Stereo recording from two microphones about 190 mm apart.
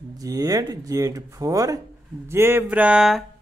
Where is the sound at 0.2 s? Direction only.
20° right (ahead or behind); by 3.3 s centre (ahead or behind).